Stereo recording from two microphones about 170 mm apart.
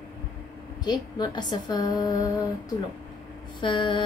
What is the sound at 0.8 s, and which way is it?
Female singing, 25° left (ahead or behind).